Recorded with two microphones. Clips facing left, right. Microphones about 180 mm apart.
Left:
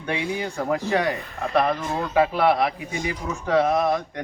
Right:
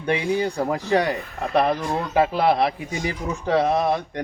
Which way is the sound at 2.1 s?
30° right (ahead or behind).